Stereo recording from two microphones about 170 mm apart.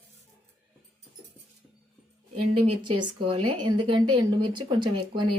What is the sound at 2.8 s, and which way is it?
Speech, 30° right (ahead or behind).